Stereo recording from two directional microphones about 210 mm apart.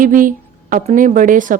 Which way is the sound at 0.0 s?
40° right (ahead or behind).